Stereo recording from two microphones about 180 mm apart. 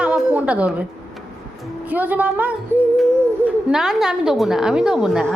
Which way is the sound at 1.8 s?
10° right (ahead or behind).